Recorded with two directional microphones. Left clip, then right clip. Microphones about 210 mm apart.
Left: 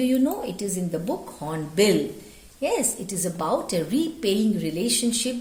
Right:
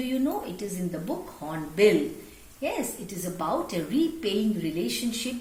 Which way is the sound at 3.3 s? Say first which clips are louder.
Left 3 dB; 50° left (ahead or behind).